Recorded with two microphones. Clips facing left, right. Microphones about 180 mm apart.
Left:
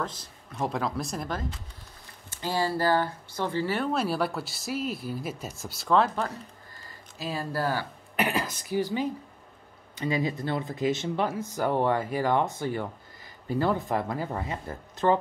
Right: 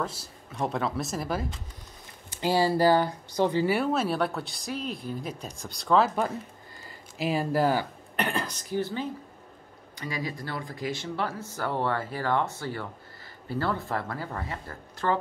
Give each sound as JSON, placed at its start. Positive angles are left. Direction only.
{"t": 0.0, "sound": "speech", "side_deg": -5}
{"t": 7.2, "sound": "speech", "side_deg": -15}
{"t": 8.2, "sound": "speech", "side_deg": 10}
{"t": 9.9, "sound": "speech", "side_deg": 20}